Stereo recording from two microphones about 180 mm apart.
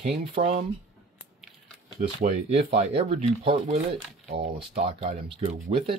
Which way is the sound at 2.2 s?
40° right (ahead or behind).